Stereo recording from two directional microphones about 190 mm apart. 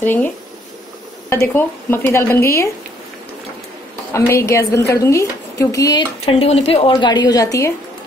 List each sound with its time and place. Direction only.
0.0 s a woman's voice: 10° left (ahead or behind)
1.3 s a woman's voice: 15° left (ahead or behind)
4.1 s a woman's voice: 15° left (ahead or behind)
6.2 s a woman's voice: 30° left (ahead or behind); by 7.7 s 15° left (ahead or behind)